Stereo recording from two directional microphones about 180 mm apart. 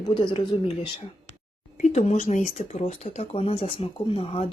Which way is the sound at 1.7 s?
40° left (ahead or behind).